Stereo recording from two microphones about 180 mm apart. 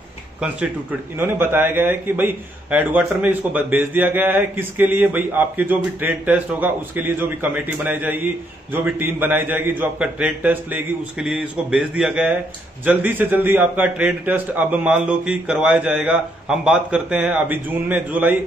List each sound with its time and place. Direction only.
1.1 s a man's voice: 10° right (ahead or behind)